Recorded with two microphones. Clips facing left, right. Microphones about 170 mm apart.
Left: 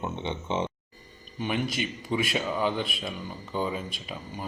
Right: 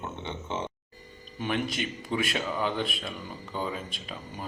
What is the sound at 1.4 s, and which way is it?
A man's voice, centre (ahead or behind).